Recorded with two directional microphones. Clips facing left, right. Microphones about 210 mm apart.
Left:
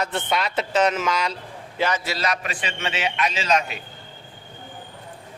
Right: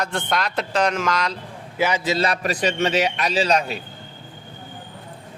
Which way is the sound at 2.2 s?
35° right (ahead or behind).